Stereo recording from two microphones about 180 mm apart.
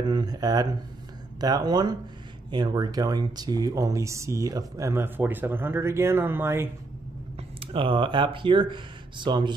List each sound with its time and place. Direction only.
0.0 s speech: 25° right (ahead or behind)
7.6 s speech: 30° right (ahead or behind)